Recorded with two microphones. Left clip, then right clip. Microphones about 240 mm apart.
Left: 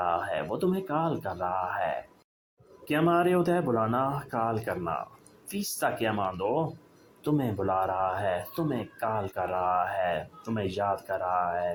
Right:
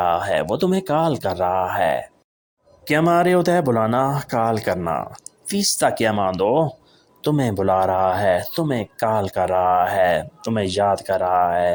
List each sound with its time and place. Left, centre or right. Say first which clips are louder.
0.0 s speech: right 9 dB; right